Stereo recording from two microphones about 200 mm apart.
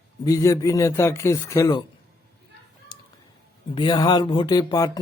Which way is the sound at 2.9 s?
20° left (ahead or behind).